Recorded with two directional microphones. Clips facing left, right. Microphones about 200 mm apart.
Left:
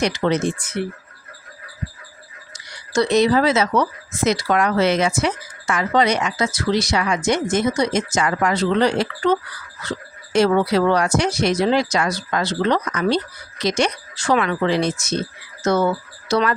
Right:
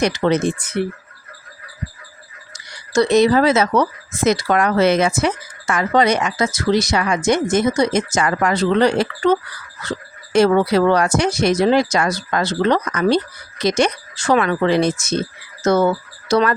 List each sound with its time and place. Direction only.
0.0 s speech: 55° right (ahead or behind)
2.5 s speech: 45° right (ahead or behind)
10.3 s speech: 50° right (ahead or behind)